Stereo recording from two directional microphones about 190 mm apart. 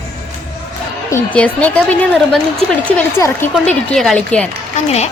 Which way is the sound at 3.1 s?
10° left (ahead or behind).